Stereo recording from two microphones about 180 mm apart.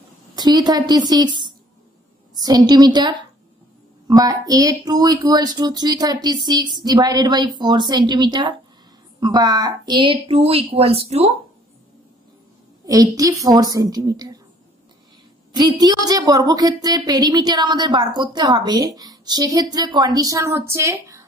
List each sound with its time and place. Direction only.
0.4 s a woman's voice: 20° right (ahead or behind)
12.8 s a woman's voice: 20° right (ahead or behind)
15.5 s a woman's voice: 25° right (ahead or behind)